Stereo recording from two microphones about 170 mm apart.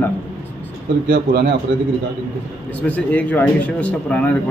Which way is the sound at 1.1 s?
70° right (ahead or behind).